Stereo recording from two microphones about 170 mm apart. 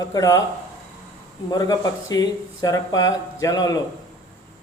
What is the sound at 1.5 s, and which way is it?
Speech, 20° left (ahead or behind).